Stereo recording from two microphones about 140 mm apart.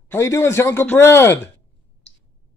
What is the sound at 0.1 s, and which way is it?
A man's voice, 20° left (ahead or behind).